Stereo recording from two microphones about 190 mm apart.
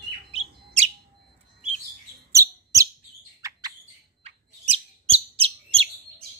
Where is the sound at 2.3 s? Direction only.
15° right (ahead or behind).